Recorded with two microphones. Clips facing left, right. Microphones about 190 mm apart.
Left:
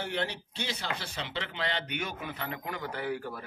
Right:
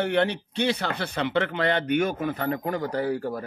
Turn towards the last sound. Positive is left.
turn(degrees=-40)  # may be behind; listen again after turning